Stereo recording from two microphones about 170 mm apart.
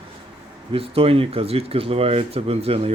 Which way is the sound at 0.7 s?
35° right (ahead or behind).